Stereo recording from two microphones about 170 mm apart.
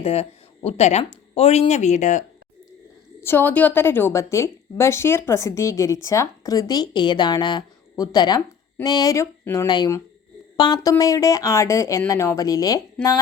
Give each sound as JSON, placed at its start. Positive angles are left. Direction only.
{"t": 0.0, "sound": "speech", "side_deg": 35}
{"t": 3.2, "sound": "a woman's voice", "side_deg": 15}